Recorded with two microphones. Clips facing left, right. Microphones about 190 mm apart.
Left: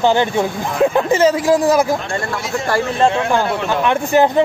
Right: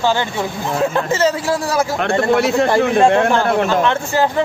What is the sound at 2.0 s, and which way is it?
Speech, 65° right (ahead or behind).